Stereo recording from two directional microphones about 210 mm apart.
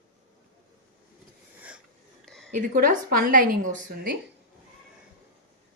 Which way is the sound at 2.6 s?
40° right (ahead or behind).